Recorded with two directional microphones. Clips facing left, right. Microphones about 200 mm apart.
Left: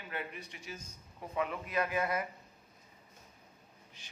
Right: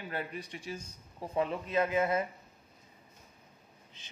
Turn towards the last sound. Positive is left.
turn(degrees=-20)  # may be behind; listen again after turning